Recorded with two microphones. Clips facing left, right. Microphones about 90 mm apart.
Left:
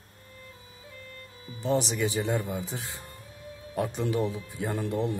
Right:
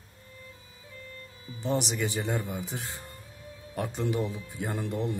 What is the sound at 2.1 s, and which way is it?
Speech, 20° right (ahead or behind).